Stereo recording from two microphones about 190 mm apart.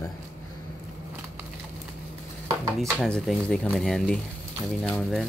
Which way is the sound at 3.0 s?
5° left (ahead or behind).